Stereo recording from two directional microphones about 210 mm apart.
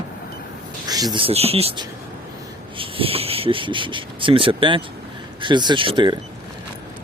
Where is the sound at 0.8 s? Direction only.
20° right (ahead or behind).